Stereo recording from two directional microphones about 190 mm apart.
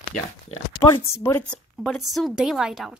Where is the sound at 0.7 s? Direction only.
20° left (ahead or behind).